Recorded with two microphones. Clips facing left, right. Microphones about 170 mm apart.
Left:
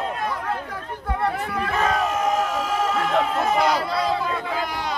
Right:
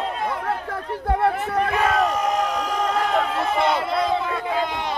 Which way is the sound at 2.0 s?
Centre (ahead or behind).